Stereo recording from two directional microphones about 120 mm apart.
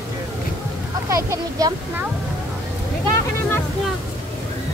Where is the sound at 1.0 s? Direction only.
25° right (ahead or behind).